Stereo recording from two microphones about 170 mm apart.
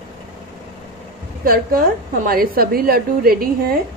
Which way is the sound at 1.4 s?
60° right (ahead or behind).